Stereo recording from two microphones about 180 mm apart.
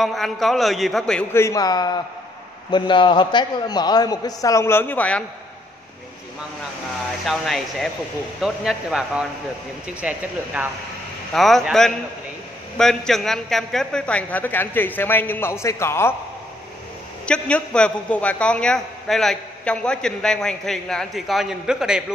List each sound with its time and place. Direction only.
0.0 s a man's voice: centre (ahead or behind)
1.3 s a man's voice: 15° left (ahead or behind)
7.2 s a man's voice: centre (ahead or behind)
17.3 s a man's voice: 5° left (ahead or behind)